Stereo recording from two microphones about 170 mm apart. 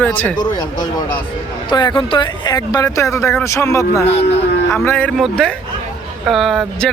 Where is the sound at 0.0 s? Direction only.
10° left (ahead or behind).